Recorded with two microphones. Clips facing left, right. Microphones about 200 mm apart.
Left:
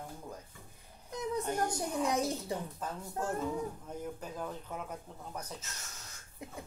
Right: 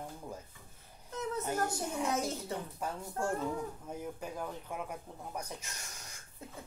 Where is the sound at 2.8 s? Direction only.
10° right (ahead or behind).